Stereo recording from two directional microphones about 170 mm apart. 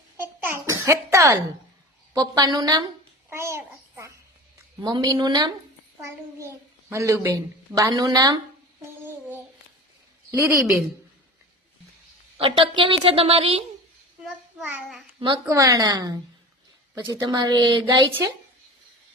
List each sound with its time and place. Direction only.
0.3 s babbling: 15° right (ahead or behind)
2.1 s a woman's voice: 25° right (ahead or behind)
3.2 s babbling: 15° right (ahead or behind)
4.8 s a woman's voice: 25° right (ahead or behind)
8.8 s a sound: 10° right (ahead or behind)
10.3 s a child's voice: 15° right (ahead or behind)
12.4 s a woman's voice: 30° right (ahead or behind)
15.2 s a woman's voice: 25° right (ahead or behind)